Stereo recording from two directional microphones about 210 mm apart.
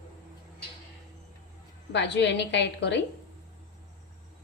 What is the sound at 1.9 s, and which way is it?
A woman's voice, 55° left (ahead or behind).